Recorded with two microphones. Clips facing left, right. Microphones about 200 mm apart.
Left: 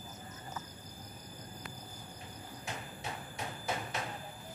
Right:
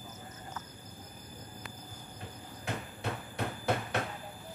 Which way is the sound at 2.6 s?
60° right (ahead or behind).